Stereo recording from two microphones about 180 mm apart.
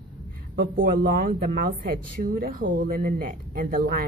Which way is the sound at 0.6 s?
55° right (ahead or behind).